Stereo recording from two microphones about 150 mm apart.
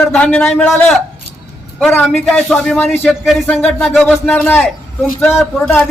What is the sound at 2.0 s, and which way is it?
Speech, centre (ahead or behind).